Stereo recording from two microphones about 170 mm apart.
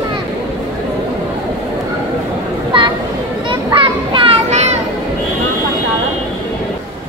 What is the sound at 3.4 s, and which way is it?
Children playing, 30° right (ahead or behind).